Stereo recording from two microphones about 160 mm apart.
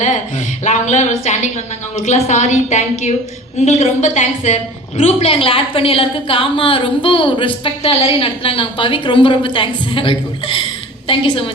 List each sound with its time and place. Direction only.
0.6 s a woman's voice: 50° left (ahead or behind)